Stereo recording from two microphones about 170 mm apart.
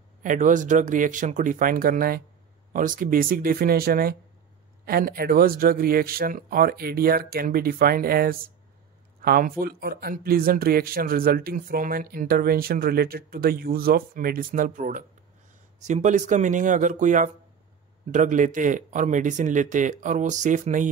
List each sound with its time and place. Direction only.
0.2 s speech: 50° right (ahead or behind)